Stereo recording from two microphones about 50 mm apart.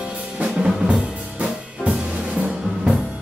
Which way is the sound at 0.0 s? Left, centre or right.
Right.